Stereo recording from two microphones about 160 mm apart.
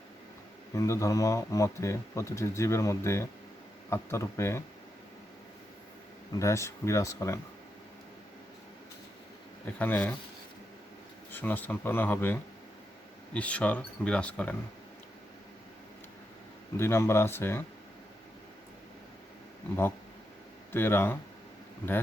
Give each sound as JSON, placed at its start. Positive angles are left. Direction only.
{"t": 0.7, "sound": "speech", "side_deg": 20}
{"t": 6.3, "sound": "speech", "side_deg": 20}
{"t": 9.6, "sound": "speech", "side_deg": 10}
{"t": 11.3, "sound": "speech", "side_deg": 10}
{"t": 16.7, "sound": "speech", "side_deg": 15}
{"t": 20.7, "sound": "speech", "side_deg": 15}